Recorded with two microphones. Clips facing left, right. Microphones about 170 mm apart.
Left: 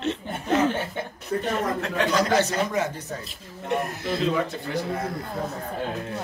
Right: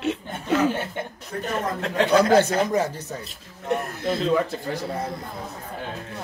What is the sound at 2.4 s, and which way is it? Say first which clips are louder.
Speech: right 3 dB; 50° right (ahead or behind).